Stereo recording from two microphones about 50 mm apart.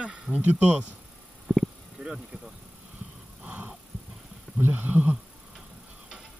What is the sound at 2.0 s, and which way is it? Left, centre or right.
Speech, right.